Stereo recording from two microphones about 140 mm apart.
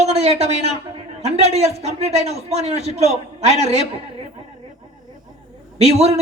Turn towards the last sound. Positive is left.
turn(degrees=-45)  # may be behind; listen again after turning